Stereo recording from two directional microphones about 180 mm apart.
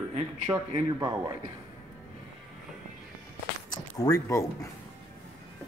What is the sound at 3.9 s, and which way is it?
Speech, 20° left (ahead or behind).